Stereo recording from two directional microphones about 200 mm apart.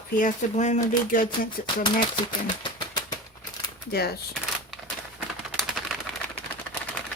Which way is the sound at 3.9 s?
50° left (ahead or behind).